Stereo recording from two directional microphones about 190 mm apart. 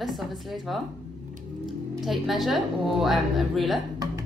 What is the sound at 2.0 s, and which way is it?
A woman's voice, centre (ahead or behind).